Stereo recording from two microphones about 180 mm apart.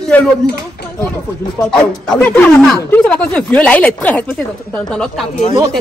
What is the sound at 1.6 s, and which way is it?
Speech, 5° left (ahead or behind).